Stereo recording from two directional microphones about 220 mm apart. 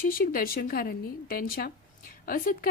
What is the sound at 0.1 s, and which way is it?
A woman's voice, 40° left (ahead or behind).